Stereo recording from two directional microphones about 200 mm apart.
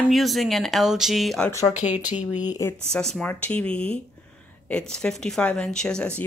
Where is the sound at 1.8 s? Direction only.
35° left (ahead or behind).